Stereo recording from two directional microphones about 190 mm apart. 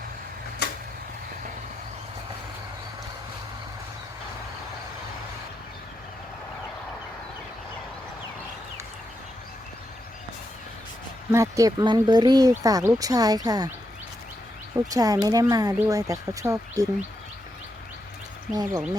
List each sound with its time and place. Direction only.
0.6 s a sound: 60° left (ahead or behind)
11.3 s speech: 15° right (ahead or behind)
14.8 s speech: 20° right (ahead or behind)
18.5 s speech: 20° right (ahead or behind)